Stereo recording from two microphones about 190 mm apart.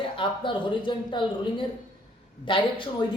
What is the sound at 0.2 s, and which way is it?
Speech, 25° left (ahead or behind).